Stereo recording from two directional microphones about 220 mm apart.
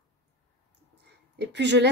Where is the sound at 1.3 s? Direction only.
50° right (ahead or behind).